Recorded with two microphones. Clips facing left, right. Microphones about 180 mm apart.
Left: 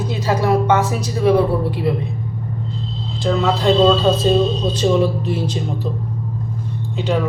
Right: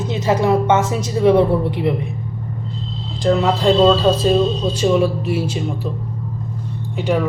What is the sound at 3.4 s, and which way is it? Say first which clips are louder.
Speech: even; 15° right (ahead or behind).